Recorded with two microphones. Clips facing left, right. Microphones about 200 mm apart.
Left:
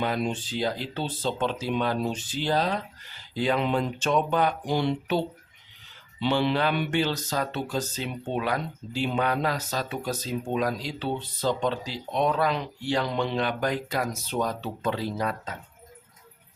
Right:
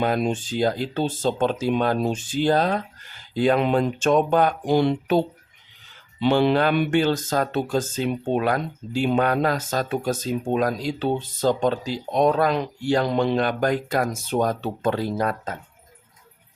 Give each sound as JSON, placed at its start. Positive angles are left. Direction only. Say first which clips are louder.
{"t": 0.0, "sound": "speech", "louder": "right 5 dB", "side_deg": -50}